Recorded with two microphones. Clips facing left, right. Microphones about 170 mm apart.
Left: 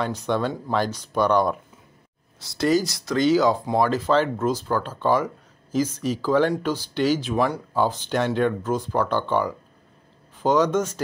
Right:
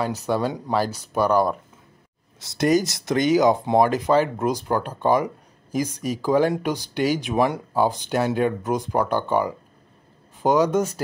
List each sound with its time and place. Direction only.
0.0 s speech: 5° right (ahead or behind)
2.4 s speech: 20° right (ahead or behind)